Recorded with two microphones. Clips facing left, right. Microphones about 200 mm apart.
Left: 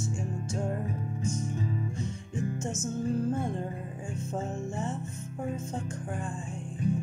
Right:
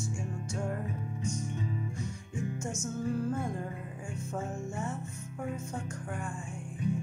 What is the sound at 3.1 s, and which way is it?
Music, 25° left (ahead or behind).